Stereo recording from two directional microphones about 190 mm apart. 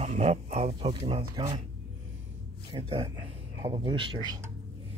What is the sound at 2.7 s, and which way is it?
A man's voice, 30° right (ahead or behind).